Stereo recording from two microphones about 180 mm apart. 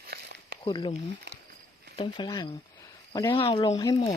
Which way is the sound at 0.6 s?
25° left (ahead or behind).